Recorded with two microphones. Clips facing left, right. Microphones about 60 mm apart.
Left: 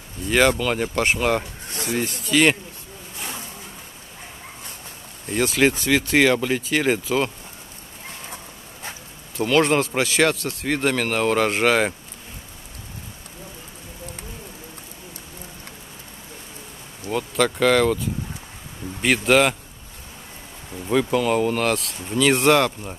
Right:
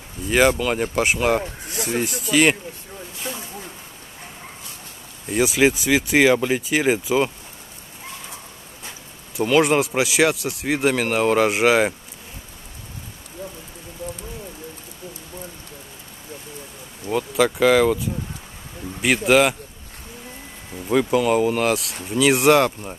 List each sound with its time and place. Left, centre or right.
0.3 s speech: centre
3.2 s snake: left
5.3 s speech: centre
9.4 s speech: centre
17.0 s speech: centre
20.8 s speech: centre